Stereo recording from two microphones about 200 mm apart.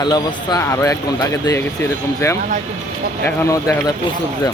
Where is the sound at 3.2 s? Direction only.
15° left (ahead or behind).